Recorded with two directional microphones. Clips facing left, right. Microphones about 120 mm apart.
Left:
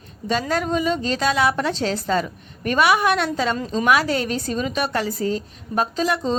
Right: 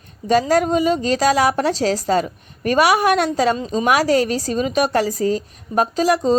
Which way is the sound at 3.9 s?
40° right (ahead or behind).